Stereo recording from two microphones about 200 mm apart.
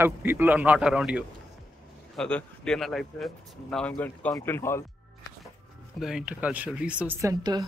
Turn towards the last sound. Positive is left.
turn(degrees=-15)  # may be behind; listen again after turning